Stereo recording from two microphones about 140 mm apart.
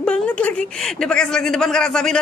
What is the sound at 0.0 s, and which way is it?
Speech, 10° left (ahead or behind).